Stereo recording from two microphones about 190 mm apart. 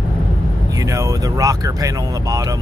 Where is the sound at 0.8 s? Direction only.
15° right (ahead or behind).